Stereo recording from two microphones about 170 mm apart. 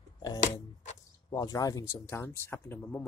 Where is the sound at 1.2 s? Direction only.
20° left (ahead or behind).